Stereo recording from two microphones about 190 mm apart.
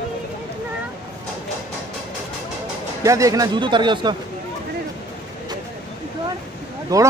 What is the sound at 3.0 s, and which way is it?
Speech, 15° right (ahead or behind).